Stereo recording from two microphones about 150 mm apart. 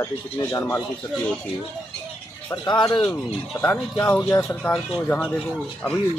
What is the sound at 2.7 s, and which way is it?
Speech, 30° left (ahead or behind).